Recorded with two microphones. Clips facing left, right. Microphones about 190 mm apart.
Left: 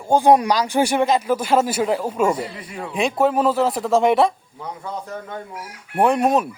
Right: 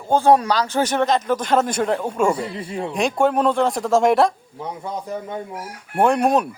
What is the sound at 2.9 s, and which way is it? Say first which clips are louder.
A man's voice: even; 5° left (ahead or behind).